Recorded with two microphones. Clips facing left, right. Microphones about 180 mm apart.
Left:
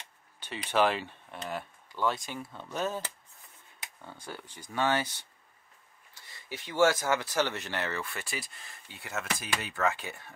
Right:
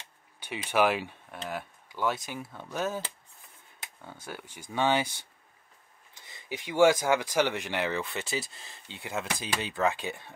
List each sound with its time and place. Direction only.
0.7 s speech: 10° right (ahead or behind)
4.0 s speech: 10° right (ahead or behind)